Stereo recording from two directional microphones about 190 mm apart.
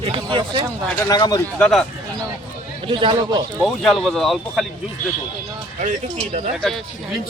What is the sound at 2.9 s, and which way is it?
Speech, 25° right (ahead or behind).